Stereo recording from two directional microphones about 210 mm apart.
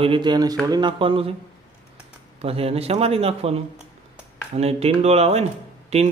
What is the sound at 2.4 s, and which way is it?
A man's voice, 30° right (ahead or behind).